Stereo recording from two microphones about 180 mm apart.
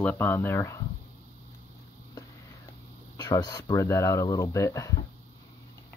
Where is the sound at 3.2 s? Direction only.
20° left (ahead or behind).